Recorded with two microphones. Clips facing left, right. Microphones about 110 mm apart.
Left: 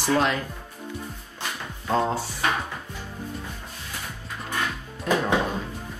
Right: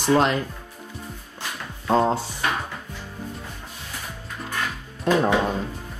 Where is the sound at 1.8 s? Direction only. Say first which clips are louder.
Right 4 dB; 30° right (ahead or behind).